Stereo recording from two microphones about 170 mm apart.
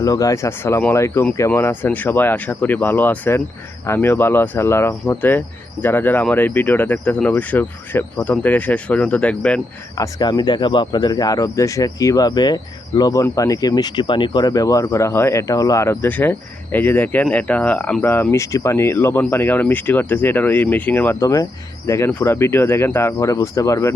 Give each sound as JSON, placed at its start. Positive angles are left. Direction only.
{"t": 0.0, "sound": "speech", "side_deg": 20}
{"t": 10.0, "sound": "speech", "side_deg": 25}